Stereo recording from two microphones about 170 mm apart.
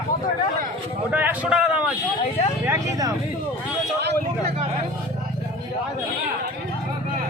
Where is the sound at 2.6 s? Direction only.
15° right (ahead or behind).